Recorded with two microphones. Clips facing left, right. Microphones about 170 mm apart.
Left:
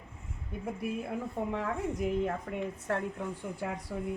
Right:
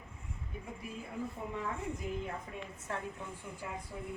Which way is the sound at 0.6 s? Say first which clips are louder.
Left 12 dB; 70° left (ahead or behind).